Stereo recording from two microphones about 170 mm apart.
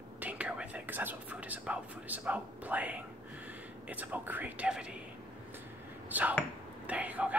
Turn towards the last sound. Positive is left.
turn(degrees=-10)  # may be behind; listen again after turning